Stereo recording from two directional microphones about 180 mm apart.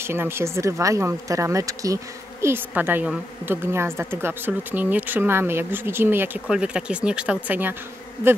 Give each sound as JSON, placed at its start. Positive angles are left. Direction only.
{"t": 0.0, "sound": "a woman's voice", "side_deg": -15}